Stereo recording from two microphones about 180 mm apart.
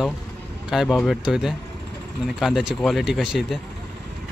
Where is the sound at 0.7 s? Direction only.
Centre (ahead or behind).